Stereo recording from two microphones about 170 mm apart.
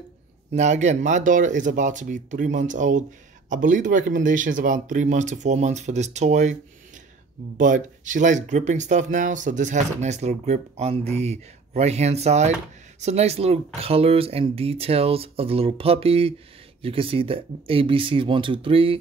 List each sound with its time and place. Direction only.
0.5 s speech: 40° right (ahead or behind)
7.5 s speech: 50° right (ahead or behind); by 18.9 s 30° right (ahead or behind)